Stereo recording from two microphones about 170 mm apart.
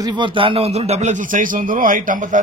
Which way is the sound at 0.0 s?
25° right (ahead or behind).